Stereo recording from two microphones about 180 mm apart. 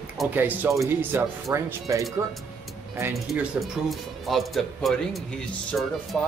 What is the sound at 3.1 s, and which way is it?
Speech, centre (ahead or behind).